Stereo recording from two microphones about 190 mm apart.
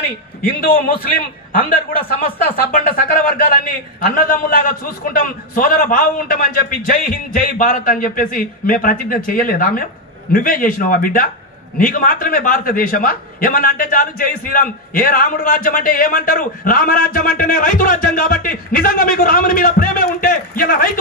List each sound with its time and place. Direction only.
1.5 s a man's voice: 50° left (ahead or behind)